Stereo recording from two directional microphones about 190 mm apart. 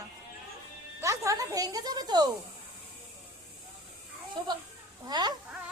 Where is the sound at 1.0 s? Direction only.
15° right (ahead or behind).